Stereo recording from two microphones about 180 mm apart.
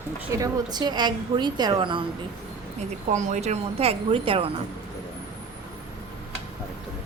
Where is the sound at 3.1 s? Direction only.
40° right (ahead or behind).